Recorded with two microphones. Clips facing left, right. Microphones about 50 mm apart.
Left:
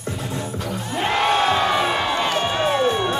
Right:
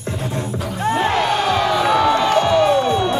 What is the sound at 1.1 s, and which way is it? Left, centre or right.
Crowd, left.